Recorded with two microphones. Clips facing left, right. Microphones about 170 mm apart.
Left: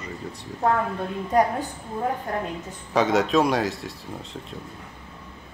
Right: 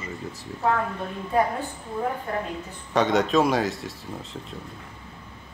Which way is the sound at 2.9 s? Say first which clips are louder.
Left 1 dB; centre (ahead or behind).